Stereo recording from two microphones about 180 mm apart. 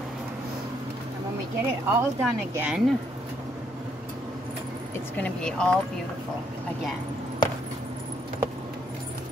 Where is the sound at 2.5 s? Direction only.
10° right (ahead or behind).